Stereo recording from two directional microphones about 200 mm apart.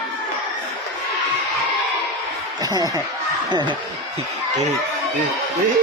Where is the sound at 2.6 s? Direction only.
20° right (ahead or behind).